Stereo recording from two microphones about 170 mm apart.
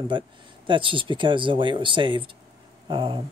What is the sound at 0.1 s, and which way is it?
Speech, 30° right (ahead or behind).